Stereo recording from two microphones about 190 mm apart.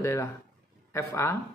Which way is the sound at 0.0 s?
15° left (ahead or behind).